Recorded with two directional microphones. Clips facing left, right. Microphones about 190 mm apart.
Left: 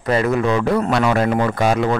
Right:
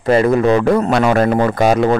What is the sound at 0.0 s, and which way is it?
Speech, 30° right (ahead or behind).